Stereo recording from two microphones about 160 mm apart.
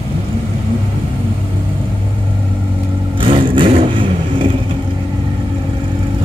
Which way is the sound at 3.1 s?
30° right (ahead or behind).